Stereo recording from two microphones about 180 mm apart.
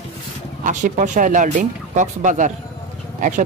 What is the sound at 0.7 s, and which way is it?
Speech, 45° right (ahead or behind).